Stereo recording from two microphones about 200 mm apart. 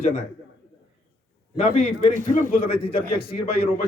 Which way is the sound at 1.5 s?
35° left (ahead or behind).